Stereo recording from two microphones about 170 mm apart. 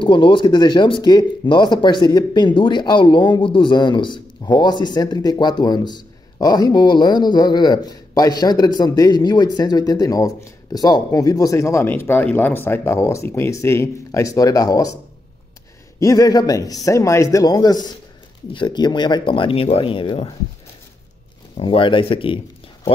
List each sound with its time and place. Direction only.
0.0 s speech: 30° left (ahead or behind)
16.0 s speech: 20° left (ahead or behind)
21.5 s speech: 30° left (ahead or behind)